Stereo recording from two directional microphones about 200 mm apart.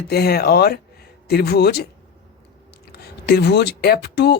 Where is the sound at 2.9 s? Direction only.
55° left (ahead or behind).